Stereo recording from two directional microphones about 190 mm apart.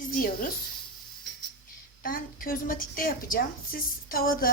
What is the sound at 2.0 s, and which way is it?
A woman's voice, 50° left (ahead or behind).